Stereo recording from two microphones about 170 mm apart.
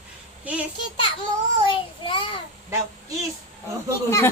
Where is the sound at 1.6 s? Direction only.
30° left (ahead or behind).